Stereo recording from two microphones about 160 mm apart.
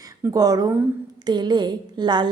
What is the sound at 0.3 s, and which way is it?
A woman's voice, 25° right (ahead or behind).